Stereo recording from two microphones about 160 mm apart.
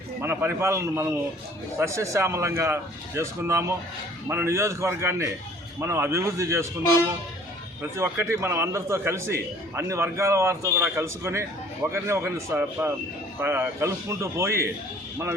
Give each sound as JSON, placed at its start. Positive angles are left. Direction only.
{"t": 0.2, "sound": "a man's voice", "side_deg": -15}
{"t": 7.8, "sound": "a man's voice", "side_deg": -15}